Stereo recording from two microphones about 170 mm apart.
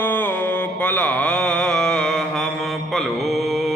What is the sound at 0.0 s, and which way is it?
Mantra, 10° left (ahead or behind).